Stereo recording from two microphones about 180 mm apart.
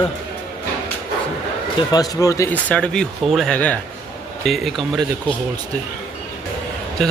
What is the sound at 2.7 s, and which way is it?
Speech, 5° left (ahead or behind).